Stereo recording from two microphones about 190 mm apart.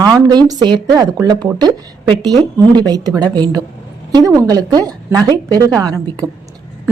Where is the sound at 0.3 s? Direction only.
20° right (ahead or behind).